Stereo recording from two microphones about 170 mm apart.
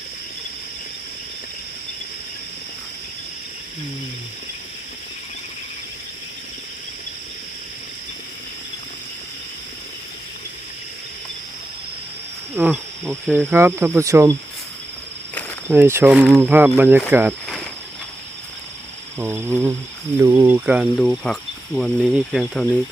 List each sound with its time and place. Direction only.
12.5 s speech: 10° right (ahead or behind)
15.7 s speech: 15° right (ahead or behind)
19.2 s speech: 15° right (ahead or behind)
20.7 s speech: centre (ahead or behind)